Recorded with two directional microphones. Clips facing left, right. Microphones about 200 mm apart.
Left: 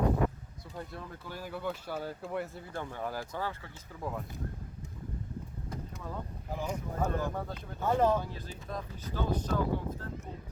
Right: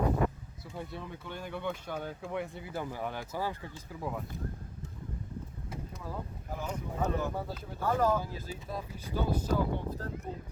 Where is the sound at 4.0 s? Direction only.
Centre (ahead or behind).